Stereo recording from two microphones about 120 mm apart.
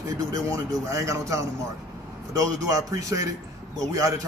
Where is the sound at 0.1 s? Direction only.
25° right (ahead or behind).